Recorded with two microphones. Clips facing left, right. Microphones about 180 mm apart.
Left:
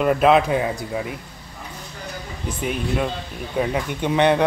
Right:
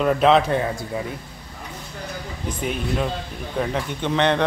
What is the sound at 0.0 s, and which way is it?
A man's voice, 5° left (ahead or behind).